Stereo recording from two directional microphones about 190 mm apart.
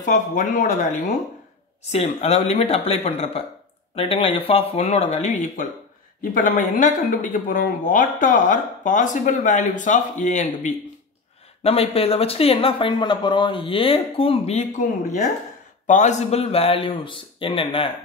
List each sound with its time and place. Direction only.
0.0 s speech: 40° left (ahead or behind)